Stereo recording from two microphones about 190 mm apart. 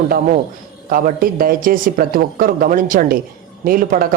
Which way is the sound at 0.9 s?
50° right (ahead or behind).